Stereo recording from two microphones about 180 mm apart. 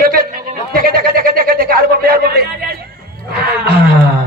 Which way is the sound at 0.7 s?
55° right (ahead or behind).